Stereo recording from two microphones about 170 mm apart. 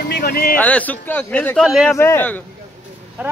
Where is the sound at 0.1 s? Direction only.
70° left (ahead or behind).